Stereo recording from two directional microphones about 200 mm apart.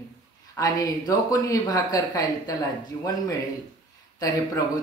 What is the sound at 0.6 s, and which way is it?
Speech, 20° left (ahead or behind).